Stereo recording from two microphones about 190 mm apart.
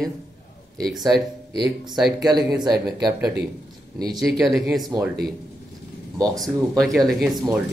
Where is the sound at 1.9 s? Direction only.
Centre (ahead or behind).